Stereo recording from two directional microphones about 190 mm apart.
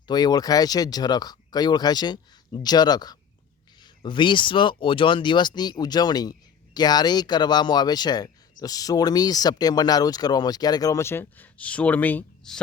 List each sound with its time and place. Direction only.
0.1 s speech: 20° left (ahead or behind)